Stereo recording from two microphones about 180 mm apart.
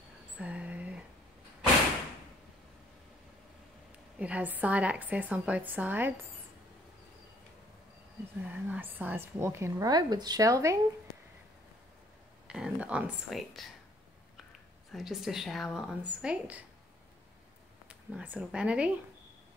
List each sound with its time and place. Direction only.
0.4 s a sound: 5° right (ahead or behind)
4.2 s a woman's voice: 10° right (ahead or behind)
8.5 s a woman's voice: 10° right (ahead or behind)
12.4 s speech: 5° right (ahead or behind)
14.9 s a woman's voice: centre (ahead or behind)
17.8 s speech: 10° right (ahead or behind)